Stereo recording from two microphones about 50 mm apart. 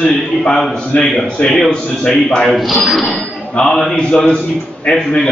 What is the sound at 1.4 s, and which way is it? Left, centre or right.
A man's voice, centre.